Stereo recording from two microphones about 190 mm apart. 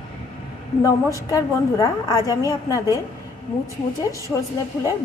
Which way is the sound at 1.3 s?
20° left (ahead or behind).